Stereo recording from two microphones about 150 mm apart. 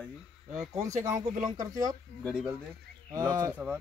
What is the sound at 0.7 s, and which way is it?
Speech, 20° right (ahead or behind).